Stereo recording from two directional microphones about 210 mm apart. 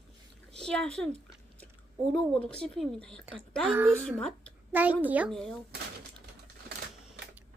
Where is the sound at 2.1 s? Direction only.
5° left (ahead or behind).